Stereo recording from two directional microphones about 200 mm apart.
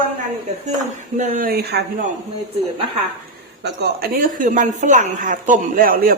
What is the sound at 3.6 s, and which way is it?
Speech, 55° right (ahead or behind).